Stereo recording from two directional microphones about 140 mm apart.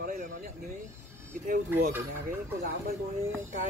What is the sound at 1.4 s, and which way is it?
Speech, 75° right (ahead or behind).